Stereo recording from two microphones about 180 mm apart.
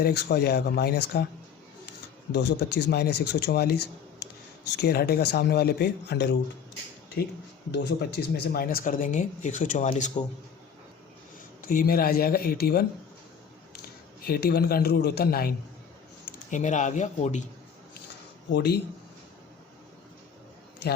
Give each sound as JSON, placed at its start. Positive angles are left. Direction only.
{"t": 0.0, "sound": "speech", "side_deg": 65}
{"t": 2.3, "sound": "speech", "side_deg": 70}
{"t": 7.7, "sound": "speech", "side_deg": 65}
{"t": 11.6, "sound": "speech", "side_deg": 55}
{"t": 13.8, "sound": "a man's voice", "side_deg": 60}
{"t": 16.3, "sound": "speech", "side_deg": 45}
{"t": 18.5, "sound": "speech", "side_deg": 65}